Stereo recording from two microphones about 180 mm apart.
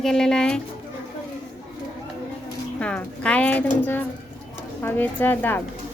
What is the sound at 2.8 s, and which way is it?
A woman's voice, 5° left (ahead or behind).